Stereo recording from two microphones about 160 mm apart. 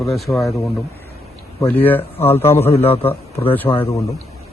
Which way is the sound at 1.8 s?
10° left (ahead or behind).